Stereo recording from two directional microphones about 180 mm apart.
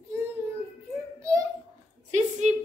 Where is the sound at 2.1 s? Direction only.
40° right (ahead or behind).